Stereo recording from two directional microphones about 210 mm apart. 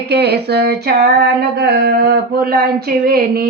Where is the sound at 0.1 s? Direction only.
50° right (ahead or behind).